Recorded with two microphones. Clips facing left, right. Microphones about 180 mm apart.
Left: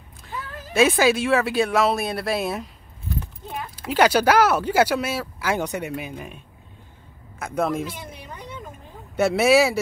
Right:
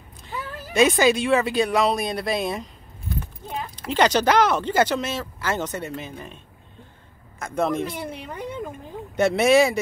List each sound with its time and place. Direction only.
0.7 s speech: 5° left (ahead or behind)
3.7 s speech: 5° left (ahead or behind)
7.3 s speech: 5° left (ahead or behind)
7.8 s speech: 60° right (ahead or behind)
9.1 s speech: 5° left (ahead or behind)